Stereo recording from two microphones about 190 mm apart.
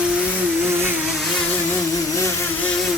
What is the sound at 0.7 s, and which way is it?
Vehicle, 10° right (ahead or behind).